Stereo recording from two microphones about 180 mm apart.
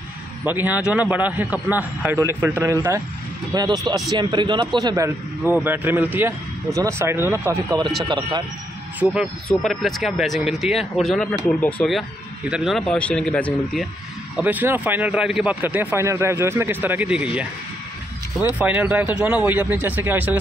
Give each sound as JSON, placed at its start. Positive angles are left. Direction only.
{"t": 0.5, "sound": "speech", "side_deg": -10}
{"t": 8.1, "sound": "speech", "side_deg": -25}
{"t": 9.0, "sound": "speech", "side_deg": -5}
{"t": 14.3, "sound": "speech", "side_deg": -10}
{"t": 18.6, "sound": "speech", "side_deg": -10}